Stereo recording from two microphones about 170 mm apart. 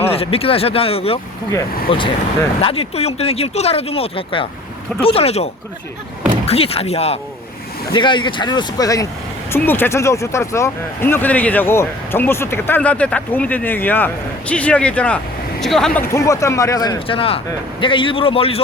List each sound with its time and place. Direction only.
0.1 s speech: 35° left (ahead or behind); by 16.0 s centre (ahead or behind)
16.1 s speech: 20° left (ahead or behind)
17.1 s speech: 35° left (ahead or behind)